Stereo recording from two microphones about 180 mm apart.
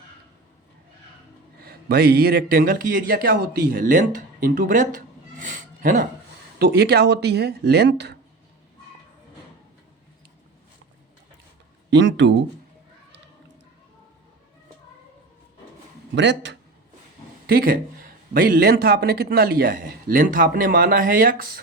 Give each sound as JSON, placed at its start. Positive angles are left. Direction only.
{"t": 1.6, "sound": "a man's voice", "side_deg": -60}
{"t": 6.6, "sound": "a man's voice", "side_deg": -65}
{"t": 11.9, "sound": "speech", "side_deg": -85}
{"t": 16.1, "sound": "speech", "side_deg": -80}
{"t": 17.4, "sound": "a man's voice", "side_deg": -55}